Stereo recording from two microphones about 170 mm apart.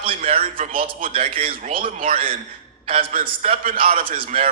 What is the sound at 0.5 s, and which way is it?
Speech, 55° right (ahead or behind).